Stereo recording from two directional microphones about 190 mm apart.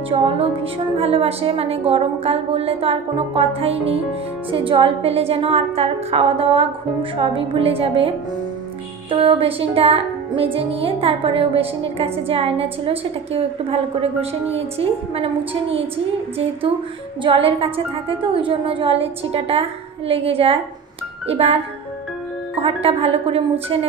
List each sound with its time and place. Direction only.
0.9 s a woman's voice: 30° right (ahead or behind)
4.5 s music: 25° right (ahead or behind)
9.1 s music: 30° right (ahead or behind)
14.5 s a woman's voice: 30° right (ahead or behind)
17.2 s music: 30° right (ahead or behind)
21.3 s a woman's voice: 30° right (ahead or behind)
22.6 s a woman's voice: 30° right (ahead or behind)